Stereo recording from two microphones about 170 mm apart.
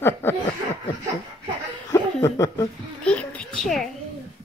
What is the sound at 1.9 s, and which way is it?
Chuckle, 15° left (ahead or behind).